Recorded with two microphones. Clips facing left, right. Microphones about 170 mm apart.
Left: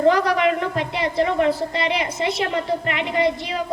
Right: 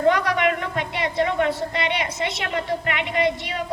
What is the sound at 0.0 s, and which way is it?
A woman's voice, 30° left (ahead or behind).